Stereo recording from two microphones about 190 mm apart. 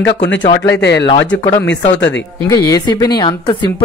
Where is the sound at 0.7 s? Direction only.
65° left (ahead or behind).